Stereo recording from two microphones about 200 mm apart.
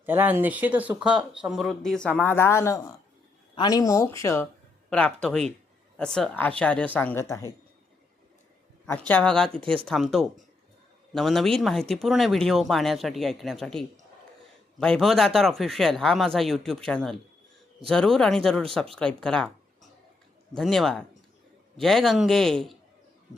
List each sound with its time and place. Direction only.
0.0 s speech: 10° right (ahead or behind); by 7.5 s 15° left (ahead or behind)
8.9 s speech: 10° left (ahead or behind)